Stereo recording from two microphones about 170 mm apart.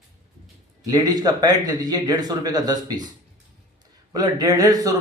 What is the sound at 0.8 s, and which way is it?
Speech, 20° right (ahead or behind).